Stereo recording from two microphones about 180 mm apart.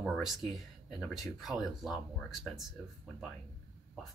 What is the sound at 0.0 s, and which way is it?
Speech, centre (ahead or behind).